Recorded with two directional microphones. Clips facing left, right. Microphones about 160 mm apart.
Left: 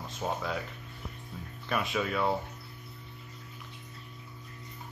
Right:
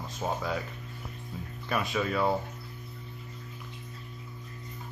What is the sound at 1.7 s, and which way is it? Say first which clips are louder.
Speech: right 1 dB; centre (ahead or behind).